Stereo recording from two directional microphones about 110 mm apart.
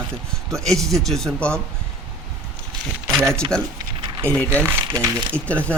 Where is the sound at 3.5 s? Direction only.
30° right (ahead or behind).